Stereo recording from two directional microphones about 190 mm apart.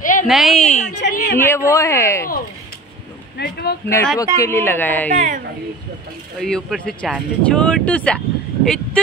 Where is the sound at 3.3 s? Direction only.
55° left (ahead or behind).